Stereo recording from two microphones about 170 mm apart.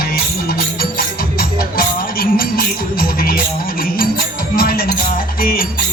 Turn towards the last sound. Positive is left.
turn(degrees=55)  # may be behind; listen again after turning